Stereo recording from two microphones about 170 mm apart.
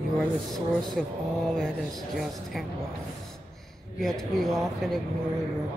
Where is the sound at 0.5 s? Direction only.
Centre (ahead or behind).